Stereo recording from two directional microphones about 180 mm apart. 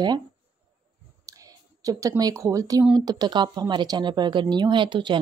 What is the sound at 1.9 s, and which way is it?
Speech, 20° right (ahead or behind).